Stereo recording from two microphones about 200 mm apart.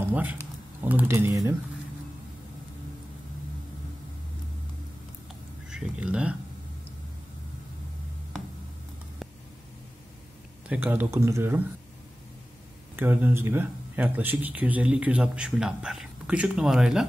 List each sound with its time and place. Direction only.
0.0 s speech: 10° right (ahead or behind)
5.7 s speech: 5° right (ahead or behind)
10.7 s speech: 10° right (ahead or behind)
12.9 s speech: 10° right (ahead or behind)